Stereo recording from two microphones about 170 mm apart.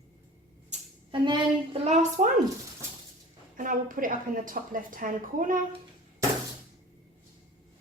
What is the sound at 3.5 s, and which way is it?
A woman's voice, 55° right (ahead or behind).